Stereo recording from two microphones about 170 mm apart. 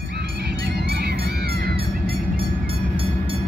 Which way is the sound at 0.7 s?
70° right (ahead or behind).